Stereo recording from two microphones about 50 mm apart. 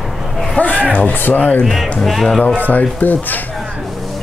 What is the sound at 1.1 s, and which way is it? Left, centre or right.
Speech, left.